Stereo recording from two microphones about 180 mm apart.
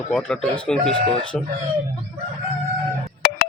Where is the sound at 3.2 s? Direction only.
60° left (ahead or behind).